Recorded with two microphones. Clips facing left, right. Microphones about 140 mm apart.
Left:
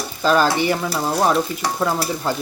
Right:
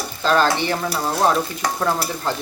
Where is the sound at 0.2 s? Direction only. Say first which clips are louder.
Left 1 dB; 10° left (ahead or behind).